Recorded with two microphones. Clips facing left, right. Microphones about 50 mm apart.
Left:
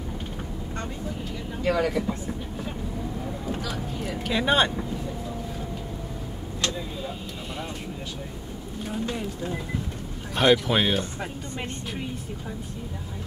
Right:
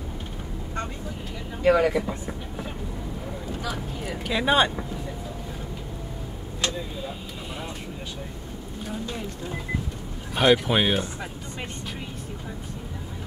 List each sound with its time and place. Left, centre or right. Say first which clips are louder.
1.6 s speech: right 4 dB; centre
3.6 s speech: even; centre
4.2 s speech: right 1 dB; centre
10.3 s speech: even; centre